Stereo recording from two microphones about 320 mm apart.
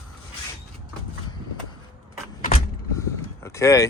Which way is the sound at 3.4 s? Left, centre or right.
Centre.